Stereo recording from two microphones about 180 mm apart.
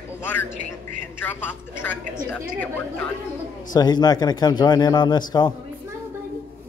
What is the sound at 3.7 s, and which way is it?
Speech, 20° left (ahead or behind).